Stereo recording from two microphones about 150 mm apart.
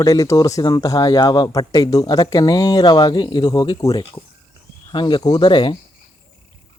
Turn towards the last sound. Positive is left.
turn(degrees=30)  # may be behind; listen again after turning